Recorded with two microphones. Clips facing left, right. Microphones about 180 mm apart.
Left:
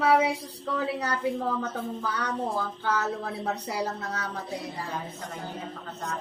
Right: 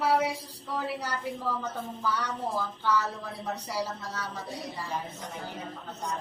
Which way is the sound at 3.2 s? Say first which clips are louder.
Left 4 dB; 65° left (ahead or behind).